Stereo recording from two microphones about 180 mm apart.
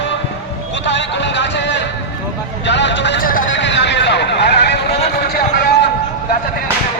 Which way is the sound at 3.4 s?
85° left.